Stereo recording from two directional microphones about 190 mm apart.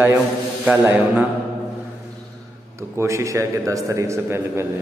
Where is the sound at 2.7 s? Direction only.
15° right (ahead or behind).